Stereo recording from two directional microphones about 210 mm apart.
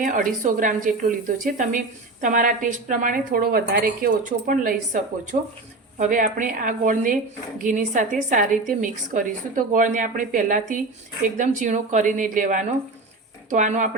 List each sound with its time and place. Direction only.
0.0 s a woman's voice: 40° right (ahead or behind)